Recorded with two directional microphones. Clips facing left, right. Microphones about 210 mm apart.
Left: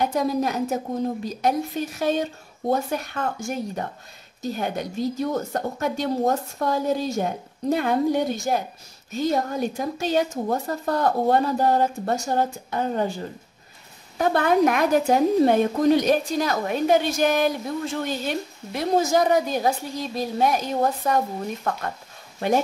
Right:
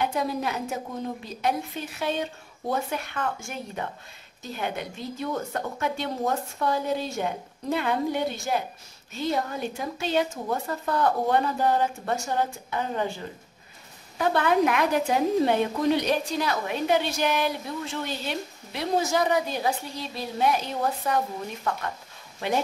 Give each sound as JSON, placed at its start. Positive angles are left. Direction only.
{"t": 0.0, "sound": "a woman's voice", "side_deg": 40}
{"t": 14.1, "sound": "a woman's voice", "side_deg": 40}